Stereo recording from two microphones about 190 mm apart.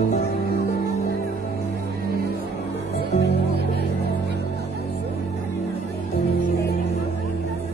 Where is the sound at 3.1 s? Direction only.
60° left (ahead or behind).